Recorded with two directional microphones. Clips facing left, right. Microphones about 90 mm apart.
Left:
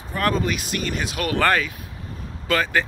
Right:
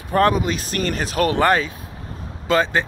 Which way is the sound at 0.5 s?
35° right (ahead or behind).